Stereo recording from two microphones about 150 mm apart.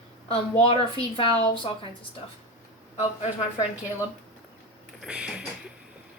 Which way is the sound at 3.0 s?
50° left (ahead or behind).